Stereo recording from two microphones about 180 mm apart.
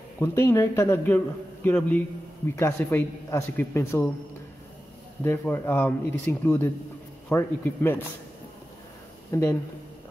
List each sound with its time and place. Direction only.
0.2 s a man's voice: 15° left (ahead or behind)
5.2 s a man's voice: 10° left (ahead or behind)
9.3 s a man's voice: 15° left (ahead or behind)